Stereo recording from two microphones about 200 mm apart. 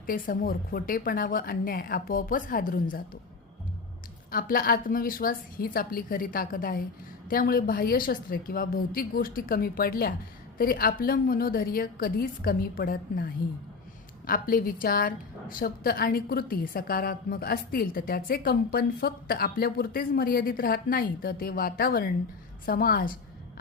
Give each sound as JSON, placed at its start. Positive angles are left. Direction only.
{"t": 0.0, "sound": "a woman's voice", "side_deg": 45}
{"t": 4.3, "sound": "a woman's voice", "side_deg": 45}